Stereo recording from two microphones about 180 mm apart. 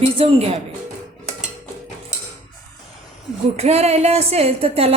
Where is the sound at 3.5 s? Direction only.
35° right (ahead or behind).